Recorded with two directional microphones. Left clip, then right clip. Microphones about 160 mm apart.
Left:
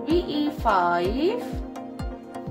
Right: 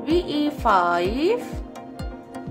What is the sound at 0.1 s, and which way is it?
Speech, 20° right (ahead or behind).